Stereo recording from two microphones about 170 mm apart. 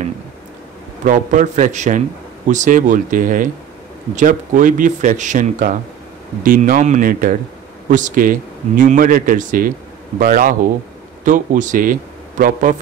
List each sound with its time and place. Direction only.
1.0 s a man's voice: 50° right (ahead or behind)